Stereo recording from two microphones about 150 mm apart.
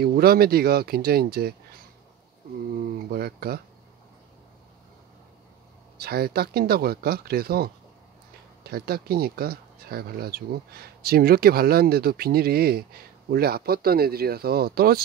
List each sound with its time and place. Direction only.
0.0 s speech: 90° right
3.1 s speech: 90° right
5.9 s speech: 90° right